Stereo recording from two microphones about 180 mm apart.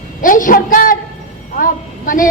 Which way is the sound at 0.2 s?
50° left (ahead or behind).